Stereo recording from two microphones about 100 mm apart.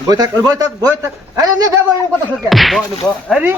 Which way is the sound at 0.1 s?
35° right (ahead or behind).